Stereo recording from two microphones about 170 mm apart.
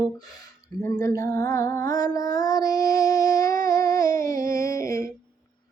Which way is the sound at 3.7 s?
20° left (ahead or behind).